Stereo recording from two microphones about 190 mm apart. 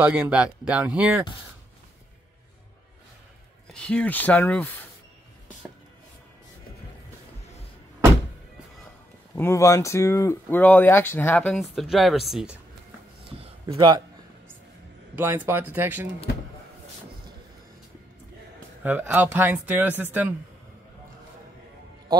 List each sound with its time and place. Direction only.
0.0 s speech: 5° right (ahead or behind)
3.7 s speech: 5° left (ahead or behind)
9.3 s speech: 15° left (ahead or behind)
13.2 s a sound: 30° right (ahead or behind)
13.7 s speech: 20° right (ahead or behind)
15.1 s speech: 10° right (ahead or behind)
18.8 s speech: 10° right (ahead or behind)